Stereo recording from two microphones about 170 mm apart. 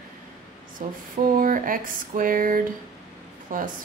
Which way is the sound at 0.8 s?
55° right (ahead or behind).